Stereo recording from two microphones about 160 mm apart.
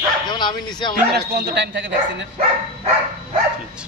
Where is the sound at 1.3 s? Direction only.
90° right.